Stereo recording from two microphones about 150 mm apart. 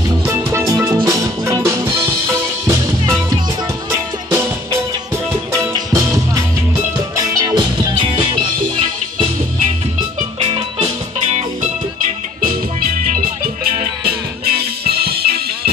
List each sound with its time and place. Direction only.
0.3 s music: 20° right (ahead or behind)
3.9 s music: 15° right (ahead or behind)
7.3 s music: 25° right (ahead or behind)
12.4 s music: 65° right (ahead or behind)
13.7 s music: 90° right